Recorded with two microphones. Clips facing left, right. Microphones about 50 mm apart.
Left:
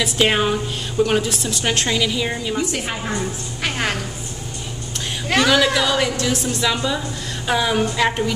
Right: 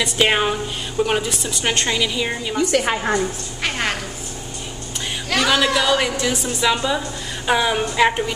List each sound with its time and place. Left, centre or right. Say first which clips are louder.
0.0 s a woman's voice: even; centre
2.7 s a woman's voice: right 6 dB; right
3.6 s a woman's voice: even; centre
5.4 s a woman's voice: left 1 dB; centre